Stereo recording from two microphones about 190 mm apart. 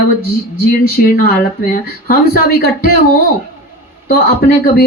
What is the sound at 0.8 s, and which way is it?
Speech, 50° left (ahead or behind).